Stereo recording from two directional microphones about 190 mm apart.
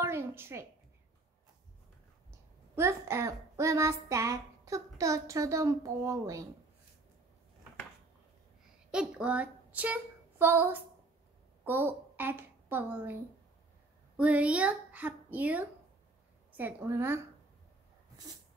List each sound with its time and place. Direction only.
0.0 s a woman's voice: 15° right (ahead or behind)
2.7 s child singing: 15° right (ahead or behind)
8.9 s a woman's voice: 5° right (ahead or behind)
16.5 s child singing: 10° right (ahead or behind)
18.1 s dog: 20° right (ahead or behind)